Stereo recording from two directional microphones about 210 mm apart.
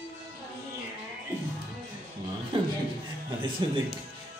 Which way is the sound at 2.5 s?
25° right (ahead or behind).